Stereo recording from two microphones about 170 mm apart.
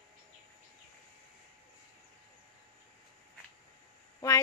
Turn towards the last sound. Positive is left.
turn(degrees=20)  # may be behind; listen again after turning